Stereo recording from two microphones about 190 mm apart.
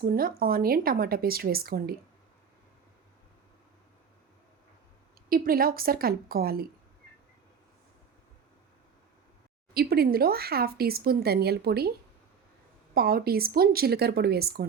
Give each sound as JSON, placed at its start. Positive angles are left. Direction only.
{"t": 0.0, "sound": "speech", "side_deg": -50}
{"t": 5.3, "sound": "speech", "side_deg": -50}
{"t": 9.7, "sound": "speech", "side_deg": -55}